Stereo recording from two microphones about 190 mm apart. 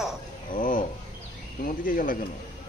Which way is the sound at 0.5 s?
45° left (ahead or behind).